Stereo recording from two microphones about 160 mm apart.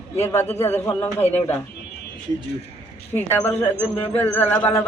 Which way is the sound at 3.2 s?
15° left (ahead or behind).